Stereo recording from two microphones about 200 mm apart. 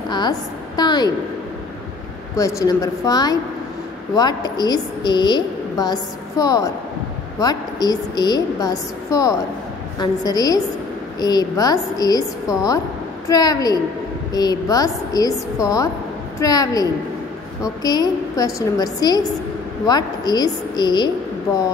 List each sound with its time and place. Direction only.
0.1 s a woman's voice: 20° left (ahead or behind)
2.3 s a woman's voice: 15° left (ahead or behind)